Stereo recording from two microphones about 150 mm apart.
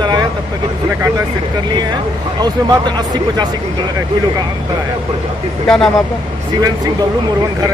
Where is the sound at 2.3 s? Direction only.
30° right (ahead or behind).